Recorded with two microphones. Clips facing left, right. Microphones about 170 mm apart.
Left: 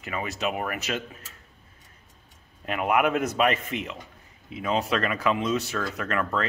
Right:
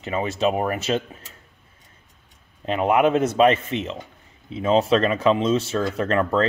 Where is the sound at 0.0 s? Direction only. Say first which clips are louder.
Right 7 dB; 25° right (ahead or behind).